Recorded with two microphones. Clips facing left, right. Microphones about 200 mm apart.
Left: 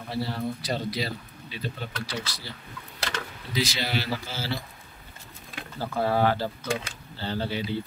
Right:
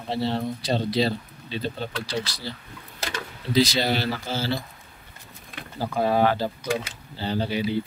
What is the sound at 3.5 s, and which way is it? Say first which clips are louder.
Speech: right 7 dB; 35° right (ahead or behind).